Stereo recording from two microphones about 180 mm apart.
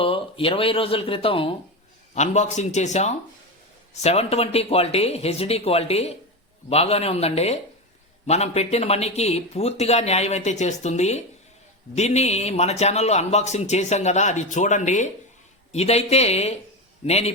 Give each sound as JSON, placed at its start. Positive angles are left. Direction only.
{"t": 0.0, "sound": "speech", "side_deg": 30}